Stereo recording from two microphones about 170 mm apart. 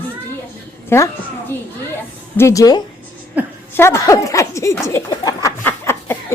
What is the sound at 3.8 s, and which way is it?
Speech, 15° left (ahead or behind).